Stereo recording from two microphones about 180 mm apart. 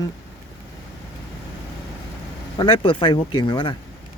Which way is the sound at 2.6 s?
25° left (ahead or behind).